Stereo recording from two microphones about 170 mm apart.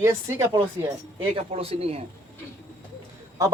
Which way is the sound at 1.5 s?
35° right (ahead or behind).